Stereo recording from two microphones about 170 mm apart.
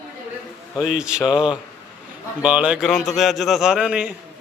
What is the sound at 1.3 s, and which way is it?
Speech, 30° left (ahead or behind).